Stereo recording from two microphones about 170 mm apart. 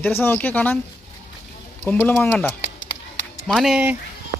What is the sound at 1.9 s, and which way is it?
Speech, 10° left (ahead or behind).